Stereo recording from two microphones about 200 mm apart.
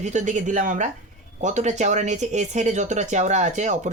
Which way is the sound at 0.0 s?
35° right (ahead or behind).